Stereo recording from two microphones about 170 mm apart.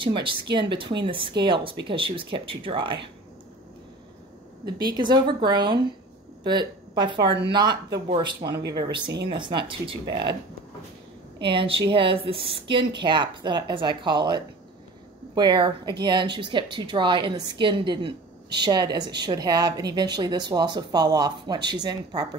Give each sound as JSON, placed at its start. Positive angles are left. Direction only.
{"t": 0.0, "sound": "a woman's voice", "side_deg": -30}
{"t": 4.6, "sound": "a woman's voice", "side_deg": -25}
{"t": 8.5, "sound": "speech", "side_deg": -75}
{"t": 8.7, "sound": "a woman's voice", "side_deg": -25}
{"t": 11.3, "sound": "a woman's voice", "side_deg": -30}